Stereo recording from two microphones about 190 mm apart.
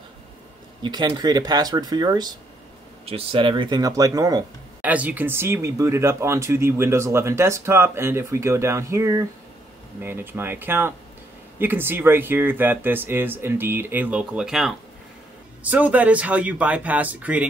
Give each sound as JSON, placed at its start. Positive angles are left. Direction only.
{"t": 0.8, "sound": "speech", "side_deg": -20}
{"t": 4.8, "sound": "speech", "side_deg": -10}